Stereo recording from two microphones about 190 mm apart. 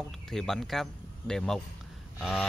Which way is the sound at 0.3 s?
Centre (ahead or behind).